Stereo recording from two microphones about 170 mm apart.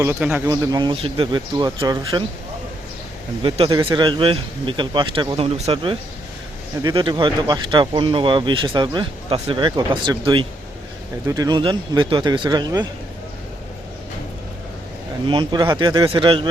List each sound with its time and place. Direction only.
0.0 s speech: 10° right (ahead or behind)
0.5 s speech: 20° right (ahead or behind)
3.4 s speech: 30° right (ahead or behind)
15.3 s speech: 25° right (ahead or behind)